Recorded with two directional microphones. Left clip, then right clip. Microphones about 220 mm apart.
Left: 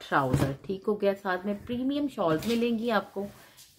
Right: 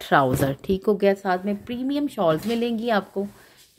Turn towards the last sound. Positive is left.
turn(degrees=-30)  # may be behind; listen again after turning